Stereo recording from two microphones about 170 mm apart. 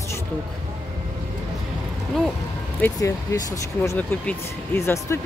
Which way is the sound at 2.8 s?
15° left (ahead or behind).